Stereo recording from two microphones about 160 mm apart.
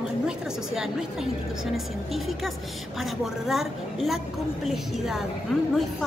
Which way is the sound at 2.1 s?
Centre (ahead or behind).